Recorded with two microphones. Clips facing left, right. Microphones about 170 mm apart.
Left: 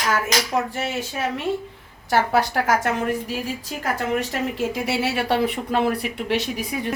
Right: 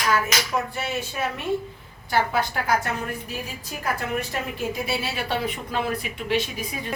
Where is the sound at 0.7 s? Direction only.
90° left.